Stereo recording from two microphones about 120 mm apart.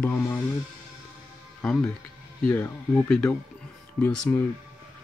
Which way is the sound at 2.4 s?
20° left (ahead or behind).